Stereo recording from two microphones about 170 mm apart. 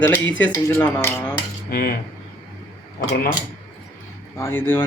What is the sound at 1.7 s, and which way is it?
Cutlery, 60° left (ahead or behind).